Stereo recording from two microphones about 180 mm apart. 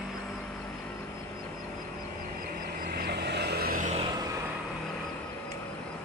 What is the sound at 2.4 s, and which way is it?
Vehicle, 55° right (ahead or behind).